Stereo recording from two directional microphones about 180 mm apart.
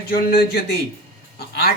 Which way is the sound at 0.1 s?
60° left (ahead or behind).